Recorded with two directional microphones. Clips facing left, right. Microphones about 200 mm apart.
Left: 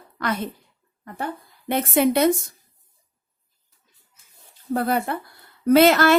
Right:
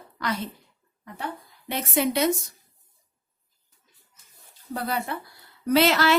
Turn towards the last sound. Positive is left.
turn(degrees=50)  # may be behind; listen again after turning